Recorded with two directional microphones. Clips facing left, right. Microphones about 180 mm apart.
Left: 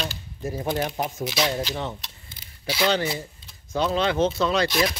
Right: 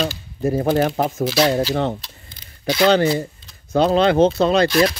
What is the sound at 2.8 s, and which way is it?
Speech, 65° right (ahead or behind).